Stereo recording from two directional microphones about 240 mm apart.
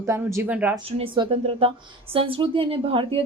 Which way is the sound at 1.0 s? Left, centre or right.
Right.